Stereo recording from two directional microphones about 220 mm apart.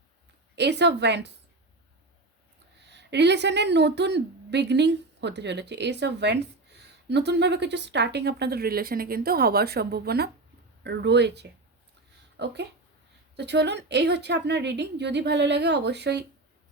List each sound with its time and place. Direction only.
0.5 s a woman's voice: 50° right (ahead or behind)
2.9 s a woman's voice: 50° right (ahead or behind)